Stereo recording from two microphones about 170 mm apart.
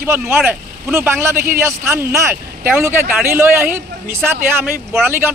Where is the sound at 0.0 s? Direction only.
10° right (ahead or behind).